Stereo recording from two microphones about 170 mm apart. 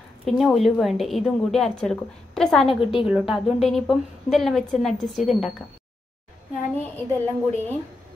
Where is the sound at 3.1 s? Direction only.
Centre (ahead or behind).